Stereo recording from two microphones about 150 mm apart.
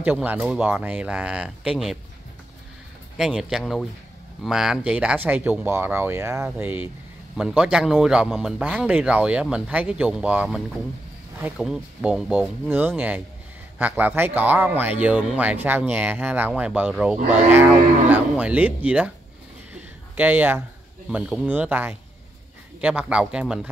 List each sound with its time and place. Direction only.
0.0 s speech: 10° right (ahead or behind)
3.2 s speech: 5° right (ahead or behind)
20.2 s speech: 10° right (ahead or behind)